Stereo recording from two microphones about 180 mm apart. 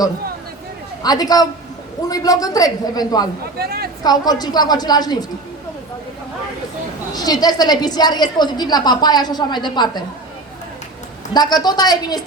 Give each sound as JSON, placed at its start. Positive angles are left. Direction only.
{"t": 1.0, "sound": "a woman's voice", "side_deg": 20}
{"t": 3.6, "sound": "speech", "side_deg": -55}
{"t": 4.0, "sound": "a woman's voice", "side_deg": 20}
{"t": 7.1, "sound": "a woman's voice", "side_deg": 20}
{"t": 11.3, "sound": "a woman's voice", "side_deg": 25}